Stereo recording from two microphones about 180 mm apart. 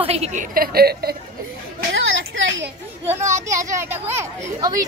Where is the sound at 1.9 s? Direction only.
90° right.